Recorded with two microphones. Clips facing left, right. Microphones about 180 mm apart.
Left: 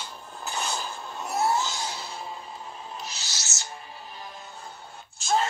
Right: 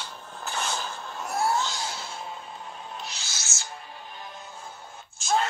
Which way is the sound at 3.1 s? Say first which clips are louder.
Even; 40° left (ahead or behind).